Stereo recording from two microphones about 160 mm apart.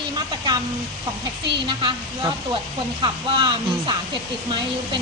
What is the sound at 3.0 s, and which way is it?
Speech, 30° right (ahead or behind).